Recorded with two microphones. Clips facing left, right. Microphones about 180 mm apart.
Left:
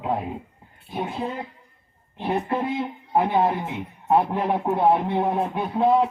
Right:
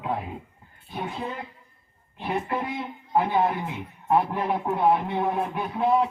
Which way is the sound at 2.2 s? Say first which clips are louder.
Left 4 dB; 25° left (ahead or behind).